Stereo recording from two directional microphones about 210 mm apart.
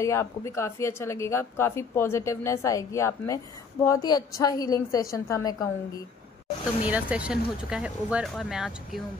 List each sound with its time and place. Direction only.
0.0 s speech: 15° left (ahead or behind)
6.8 s speech: 5° right (ahead or behind)